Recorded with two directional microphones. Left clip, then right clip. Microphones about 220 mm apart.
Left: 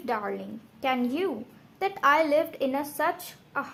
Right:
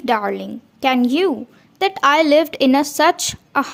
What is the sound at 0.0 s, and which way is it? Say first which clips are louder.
A woman's voice: right 11 dB; 35° right (ahead or behind).